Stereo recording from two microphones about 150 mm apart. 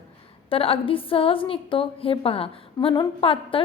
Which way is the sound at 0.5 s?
40° left (ahead or behind).